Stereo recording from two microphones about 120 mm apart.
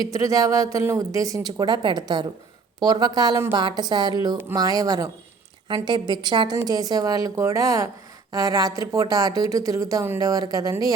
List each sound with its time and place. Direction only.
0.0 s a woman's voice: 30° right (ahead or behind)